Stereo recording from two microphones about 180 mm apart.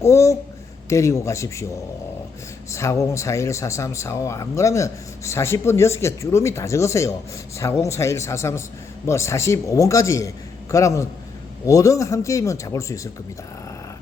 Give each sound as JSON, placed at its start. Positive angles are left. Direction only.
{"t": 0.0, "sound": "speech", "side_deg": 15}
{"t": 2.6, "sound": "speech", "side_deg": 15}